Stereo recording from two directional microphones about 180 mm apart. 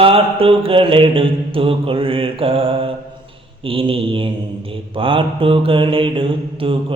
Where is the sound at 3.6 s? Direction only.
30° right (ahead or behind).